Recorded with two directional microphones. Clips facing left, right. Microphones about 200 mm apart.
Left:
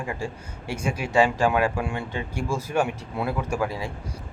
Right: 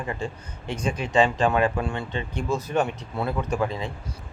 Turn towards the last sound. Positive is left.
turn(degrees=10)  # may be behind; listen again after turning